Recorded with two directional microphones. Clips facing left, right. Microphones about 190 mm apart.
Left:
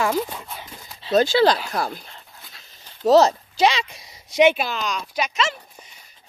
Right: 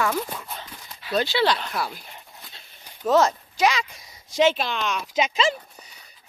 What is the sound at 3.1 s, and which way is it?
Speech, 35° left (ahead or behind).